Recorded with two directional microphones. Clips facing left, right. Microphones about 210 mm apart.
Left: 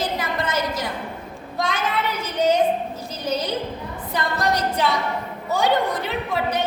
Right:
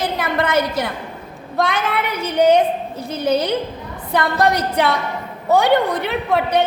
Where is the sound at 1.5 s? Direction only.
60° right (ahead or behind).